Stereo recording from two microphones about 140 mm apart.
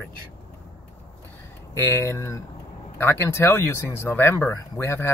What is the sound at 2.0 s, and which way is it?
Speech, 20° left (ahead or behind).